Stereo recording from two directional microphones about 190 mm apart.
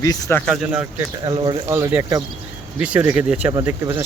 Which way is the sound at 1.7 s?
15° right (ahead or behind).